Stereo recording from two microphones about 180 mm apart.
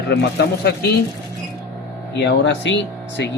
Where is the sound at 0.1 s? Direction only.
75° left (ahead or behind).